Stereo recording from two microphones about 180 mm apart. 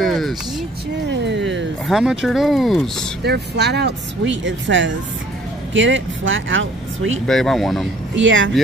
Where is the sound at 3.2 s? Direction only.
65° right (ahead or behind); by 7.2 s 90° right.